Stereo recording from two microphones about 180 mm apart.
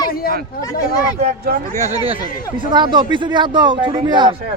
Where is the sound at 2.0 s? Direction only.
30° right (ahead or behind).